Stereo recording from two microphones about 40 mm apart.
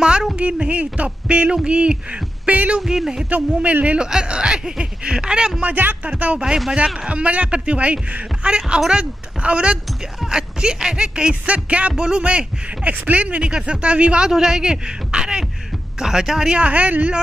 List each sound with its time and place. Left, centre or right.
0.4 s a man's voice: right
2.8 s speech: centre
3.3 s a man's voice: right
5.6 s speech: right
6.0 s a man's voice: right
11.4 s speech: right
12.0 s a man's voice: right
13.5 s a man's voice: right
14.3 s a man's voice: centre
16.5 s speech: right